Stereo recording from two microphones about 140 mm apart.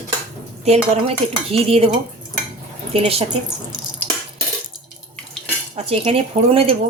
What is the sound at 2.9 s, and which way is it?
Speech, 45° right (ahead or behind).